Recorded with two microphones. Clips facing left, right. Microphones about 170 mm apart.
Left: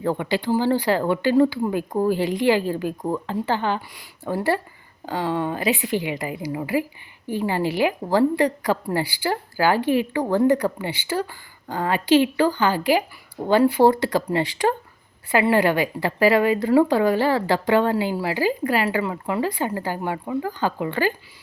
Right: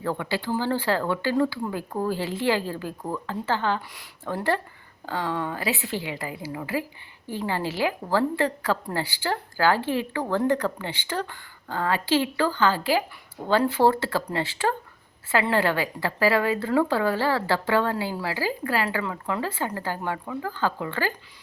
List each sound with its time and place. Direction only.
0.0 s a woman's voice: 20° left (ahead or behind)